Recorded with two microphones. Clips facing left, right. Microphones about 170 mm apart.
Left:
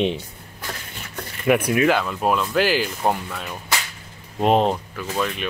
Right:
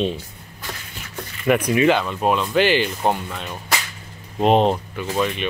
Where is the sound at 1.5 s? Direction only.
5° left (ahead or behind).